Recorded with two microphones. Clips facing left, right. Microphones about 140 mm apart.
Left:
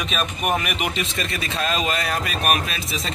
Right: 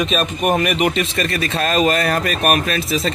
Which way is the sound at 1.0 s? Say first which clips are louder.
Right 7 dB; 65° right (ahead or behind).